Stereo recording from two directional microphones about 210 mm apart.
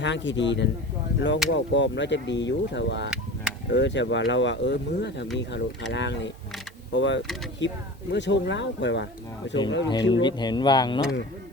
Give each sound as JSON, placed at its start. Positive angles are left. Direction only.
{"t": 0.0, "sound": "speech", "side_deg": 60}
{"t": 10.1, "sound": "speech", "side_deg": 20}